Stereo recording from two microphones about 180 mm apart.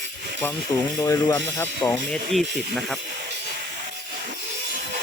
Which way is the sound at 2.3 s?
Centre (ahead or behind).